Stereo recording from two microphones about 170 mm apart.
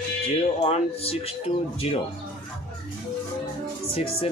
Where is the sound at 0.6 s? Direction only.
35° left (ahead or behind).